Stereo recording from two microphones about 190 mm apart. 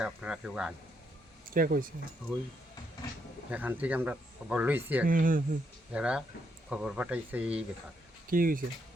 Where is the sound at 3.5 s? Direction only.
10° right (ahead or behind).